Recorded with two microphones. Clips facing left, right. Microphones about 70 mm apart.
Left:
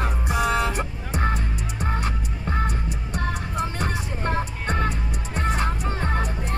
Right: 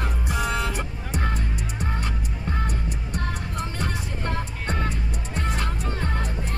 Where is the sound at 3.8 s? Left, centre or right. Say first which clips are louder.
Left 3 dB; left.